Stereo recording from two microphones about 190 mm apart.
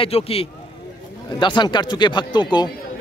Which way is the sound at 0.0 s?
30° left (ahead or behind).